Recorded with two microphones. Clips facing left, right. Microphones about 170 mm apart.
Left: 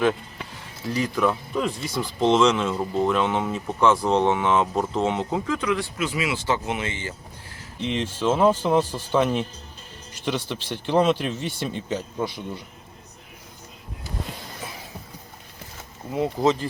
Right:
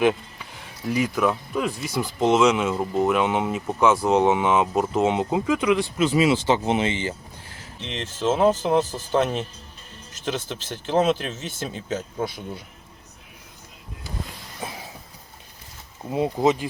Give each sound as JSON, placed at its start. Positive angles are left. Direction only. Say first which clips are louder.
{"t": 0.9, "sound": "speech", "louder": "right 1 dB", "side_deg": -10}
{"t": 7.8, "sound": "speech", "louder": "left 4 dB", "side_deg": 5}
{"t": 16.1, "sound": "speech", "louder": "right 1 dB", "side_deg": -20}